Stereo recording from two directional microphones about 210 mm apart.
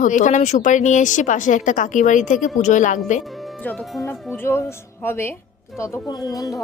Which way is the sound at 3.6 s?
5° left (ahead or behind).